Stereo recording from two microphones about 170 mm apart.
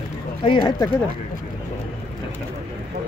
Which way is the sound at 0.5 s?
25° left (ahead or behind).